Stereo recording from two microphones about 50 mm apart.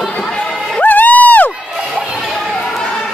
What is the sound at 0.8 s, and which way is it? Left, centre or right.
Crowd, left.